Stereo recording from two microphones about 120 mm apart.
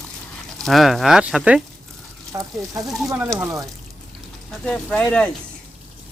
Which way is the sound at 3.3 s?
30° right (ahead or behind).